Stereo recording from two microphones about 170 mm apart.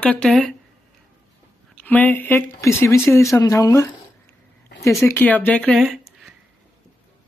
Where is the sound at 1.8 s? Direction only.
10° left (ahead or behind).